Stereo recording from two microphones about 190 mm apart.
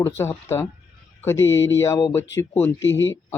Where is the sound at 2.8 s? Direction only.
80° left.